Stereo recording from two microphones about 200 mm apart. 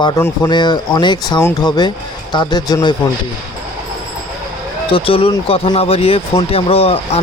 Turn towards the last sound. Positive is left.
turn(degrees=30)  # may be behind; listen again after turning